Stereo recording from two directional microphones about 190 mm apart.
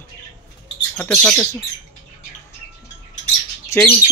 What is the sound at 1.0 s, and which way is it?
Speech, 5° left (ahead or behind).